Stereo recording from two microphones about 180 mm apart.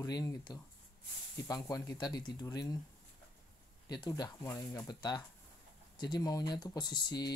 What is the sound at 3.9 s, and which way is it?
Speech, 20° left (ahead or behind).